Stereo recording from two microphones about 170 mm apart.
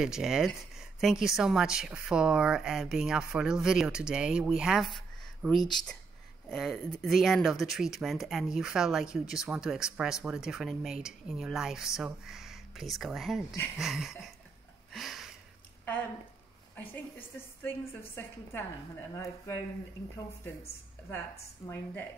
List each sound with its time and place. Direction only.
0.0 s speech: 5° right (ahead or behind)
14.9 s a sound: centre (ahead or behind)
15.8 s a woman's voice: 10° left (ahead or behind)
21.6 s a woman's voice: 15° left (ahead or behind)